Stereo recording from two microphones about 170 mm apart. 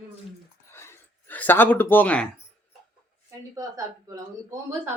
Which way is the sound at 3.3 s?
20° right (ahead or behind).